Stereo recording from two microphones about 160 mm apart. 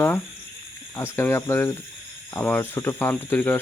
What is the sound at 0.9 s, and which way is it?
Speech, 15° left (ahead or behind).